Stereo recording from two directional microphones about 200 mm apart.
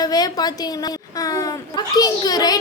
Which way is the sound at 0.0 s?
20° left (ahead or behind).